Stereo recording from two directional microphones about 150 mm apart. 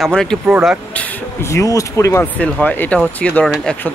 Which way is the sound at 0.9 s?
15° left (ahead or behind).